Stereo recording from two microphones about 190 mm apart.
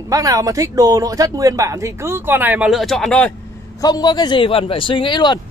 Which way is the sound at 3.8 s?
20° left (ahead or behind).